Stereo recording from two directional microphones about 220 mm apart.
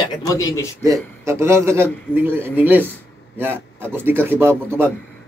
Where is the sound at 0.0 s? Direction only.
15° left (ahead or behind).